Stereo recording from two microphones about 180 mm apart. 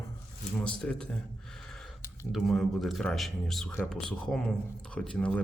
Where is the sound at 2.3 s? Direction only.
Centre (ahead or behind).